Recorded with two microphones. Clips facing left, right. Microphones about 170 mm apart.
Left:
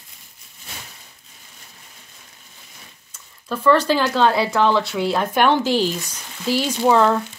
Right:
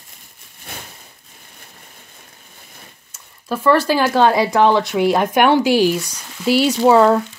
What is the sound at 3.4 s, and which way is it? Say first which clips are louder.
Speech: right 1 dB; 10° right (ahead or behind).